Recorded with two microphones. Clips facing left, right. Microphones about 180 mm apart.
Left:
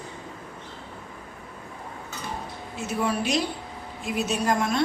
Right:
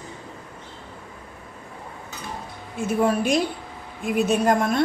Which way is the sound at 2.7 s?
50° right (ahead or behind).